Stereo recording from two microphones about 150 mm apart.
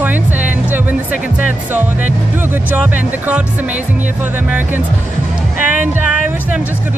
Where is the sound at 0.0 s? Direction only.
10° right (ahead or behind).